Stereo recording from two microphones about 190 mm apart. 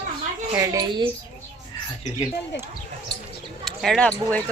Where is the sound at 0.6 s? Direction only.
15° right (ahead or behind).